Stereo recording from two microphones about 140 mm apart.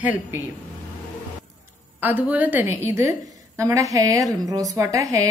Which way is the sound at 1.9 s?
15° right (ahead or behind).